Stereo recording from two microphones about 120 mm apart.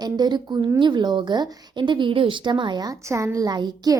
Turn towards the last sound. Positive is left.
turn(degrees=-35)  # may be behind; listen again after turning